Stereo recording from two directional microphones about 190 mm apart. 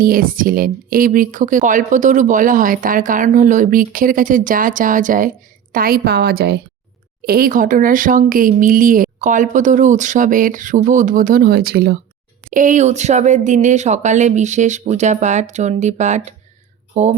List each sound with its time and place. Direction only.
0.0 s speech: 50° right (ahead or behind)
12.5 s speech: 40° right (ahead or behind)